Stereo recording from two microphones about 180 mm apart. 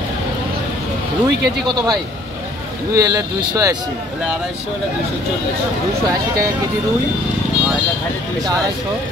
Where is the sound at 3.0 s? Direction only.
20° right (ahead or behind).